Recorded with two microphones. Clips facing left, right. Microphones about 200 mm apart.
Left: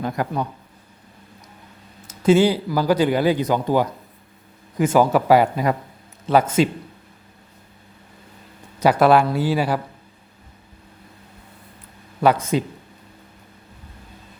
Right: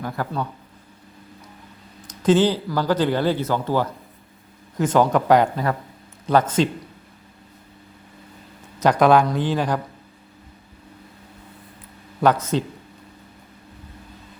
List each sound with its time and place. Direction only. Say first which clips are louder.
0.0 s speech: left 3 dB; 15° left (ahead or behind)
2.0 s speech: left 2 dB; 10° left (ahead or behind)
8.8 s speech: left 1 dB; 5° left (ahead or behind)
12.2 s speech: left 1 dB; 10° left (ahead or behind)